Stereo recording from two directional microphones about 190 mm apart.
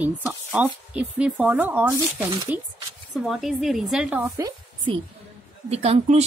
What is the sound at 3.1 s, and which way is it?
Speech, centre (ahead or behind).